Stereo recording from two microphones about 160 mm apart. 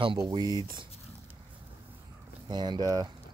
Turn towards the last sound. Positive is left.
turn(degrees=-25)  # may be behind; listen again after turning